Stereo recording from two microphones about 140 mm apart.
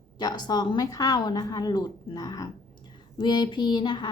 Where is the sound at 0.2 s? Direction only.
30° left (ahead or behind).